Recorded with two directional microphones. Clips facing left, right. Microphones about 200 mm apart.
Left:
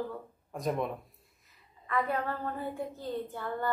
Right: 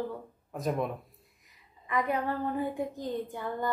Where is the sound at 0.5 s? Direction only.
Centre (ahead or behind).